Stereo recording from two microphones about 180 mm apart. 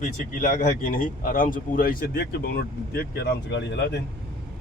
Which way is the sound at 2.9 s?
70° left (ahead or behind).